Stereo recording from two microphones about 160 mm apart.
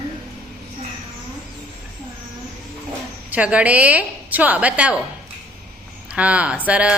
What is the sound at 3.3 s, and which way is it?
A woman's voice, 10° right (ahead or behind).